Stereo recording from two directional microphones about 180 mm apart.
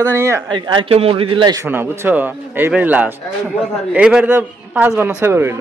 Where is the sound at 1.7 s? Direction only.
10° right (ahead or behind).